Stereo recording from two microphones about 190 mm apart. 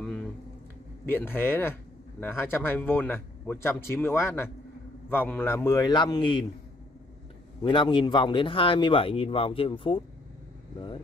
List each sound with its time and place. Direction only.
0.0 s a sound: 5° left (ahead or behind)
1.0 s a man's voice: 10° left (ahead or behind)
7.6 s speech: 25° left (ahead or behind)